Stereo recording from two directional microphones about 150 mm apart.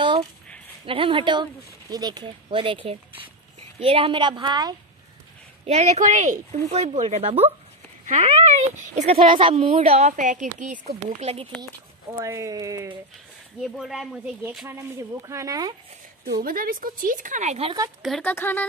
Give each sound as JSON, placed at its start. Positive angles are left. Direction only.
{"t": 0.0, "sound": "a sound", "side_deg": -30}
{"t": 0.8, "sound": "speech", "side_deg": -35}
{"t": 5.7, "sound": "a woman's voice", "side_deg": -50}
{"t": 9.3, "sound": "a woman's voice", "side_deg": -35}
{"t": 12.2, "sound": "speech", "side_deg": -20}
{"t": 13.6, "sound": "speech", "side_deg": 0}
{"t": 14.7, "sound": "speech", "side_deg": -20}
{"t": 16.3, "sound": "speech", "side_deg": -70}
{"t": 18.0, "sound": "speech", "side_deg": 0}
{"t": 18.3, "sound": "speech", "side_deg": 15}